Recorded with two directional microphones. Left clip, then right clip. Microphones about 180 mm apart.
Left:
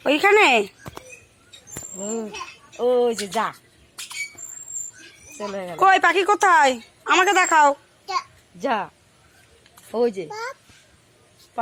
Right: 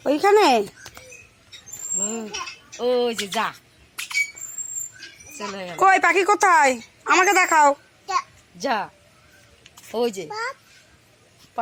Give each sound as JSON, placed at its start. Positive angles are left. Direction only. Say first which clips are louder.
{"t": 0.0, "sound": "a woman's voice", "louder": "left 1 dB", "side_deg": 0}
{"t": 2.0, "sound": "speech", "louder": "even", "side_deg": 25}
{"t": 5.7, "sound": "a woman's voice", "louder": "even", "side_deg": -5}
{"t": 8.5, "sound": "speech", "louder": "even", "side_deg": 35}
{"t": 9.9, "sound": "speech", "louder": "left 2 dB", "side_deg": 35}
{"t": 10.2, "sound": "a woman's voice", "louder": "right 2 dB", "side_deg": 0}